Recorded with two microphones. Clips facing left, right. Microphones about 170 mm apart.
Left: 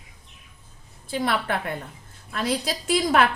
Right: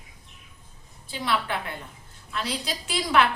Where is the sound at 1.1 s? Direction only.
50° left (ahead or behind).